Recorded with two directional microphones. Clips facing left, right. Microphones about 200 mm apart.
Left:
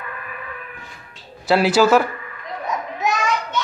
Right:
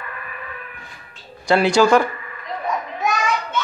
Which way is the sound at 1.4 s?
5° left (ahead or behind).